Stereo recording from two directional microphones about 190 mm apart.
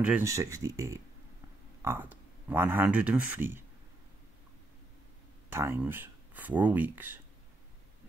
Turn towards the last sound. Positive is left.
turn(degrees=-10)  # may be behind; listen again after turning